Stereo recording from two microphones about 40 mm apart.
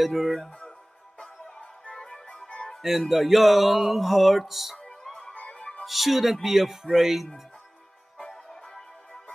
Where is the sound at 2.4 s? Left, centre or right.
Left.